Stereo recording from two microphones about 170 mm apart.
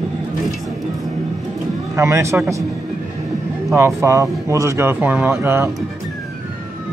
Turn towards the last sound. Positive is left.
turn(degrees=-15)  # may be behind; listen again after turning